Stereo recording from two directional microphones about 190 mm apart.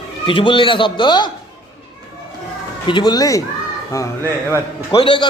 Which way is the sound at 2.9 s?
25° left (ahead or behind).